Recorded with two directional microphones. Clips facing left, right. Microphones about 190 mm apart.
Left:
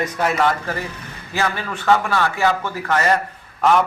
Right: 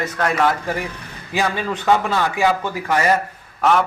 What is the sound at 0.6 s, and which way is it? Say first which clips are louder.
A man's voice: right 2 dB; 15° right (ahead or behind).